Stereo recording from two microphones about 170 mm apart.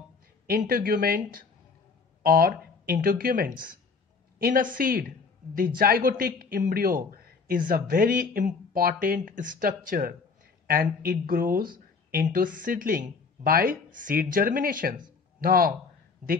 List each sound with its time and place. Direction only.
0.5 s speech: 60° right (ahead or behind)